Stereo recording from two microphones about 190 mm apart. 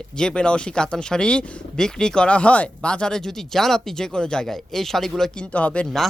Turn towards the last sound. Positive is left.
turn(degrees=5)  # may be behind; listen again after turning